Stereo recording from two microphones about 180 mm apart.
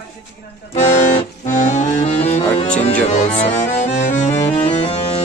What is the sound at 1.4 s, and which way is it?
Accordion, 45° left (ahead or behind).